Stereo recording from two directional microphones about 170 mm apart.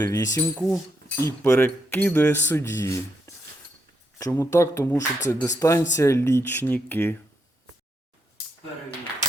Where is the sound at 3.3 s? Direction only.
20° left (ahead or behind).